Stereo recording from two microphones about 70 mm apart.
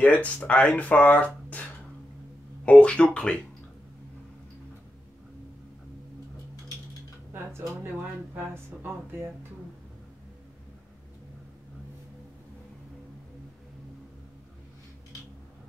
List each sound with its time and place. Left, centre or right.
0.0 s speech: left